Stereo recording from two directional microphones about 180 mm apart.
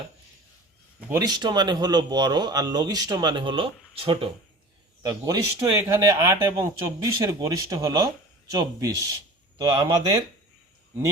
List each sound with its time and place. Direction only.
0.9 s speech: 10° right (ahead or behind)
1.2 s speech: 25° right (ahead or behind)